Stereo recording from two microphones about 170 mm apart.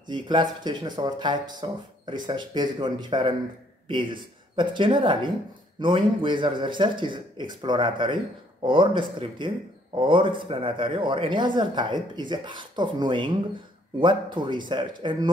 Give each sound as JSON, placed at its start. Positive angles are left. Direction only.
{"t": 0.1, "sound": "speech", "side_deg": -25}